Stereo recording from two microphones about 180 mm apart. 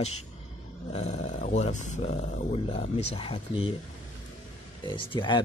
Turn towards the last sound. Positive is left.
turn(degrees=25)  # may be behind; listen again after turning